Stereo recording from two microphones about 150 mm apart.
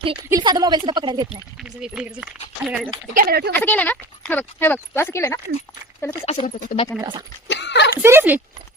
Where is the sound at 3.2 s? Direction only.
90° right.